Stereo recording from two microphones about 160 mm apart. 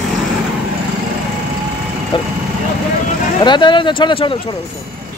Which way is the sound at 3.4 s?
30° left (ahead or behind).